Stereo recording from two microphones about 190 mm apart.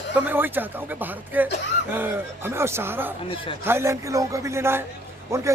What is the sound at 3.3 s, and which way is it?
Speech, 30° left (ahead or behind).